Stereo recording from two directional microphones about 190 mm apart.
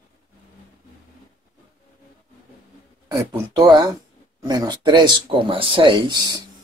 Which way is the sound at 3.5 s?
20° right (ahead or behind).